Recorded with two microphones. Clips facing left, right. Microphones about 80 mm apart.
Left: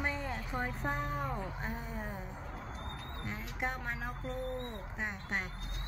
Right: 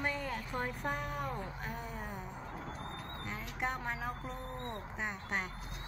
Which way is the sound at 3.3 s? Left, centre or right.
Centre.